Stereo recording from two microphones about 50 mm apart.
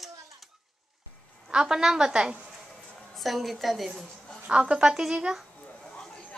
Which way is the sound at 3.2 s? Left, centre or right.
Centre.